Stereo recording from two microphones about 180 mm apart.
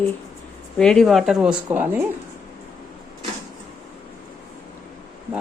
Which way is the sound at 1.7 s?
10° right (ahead or behind).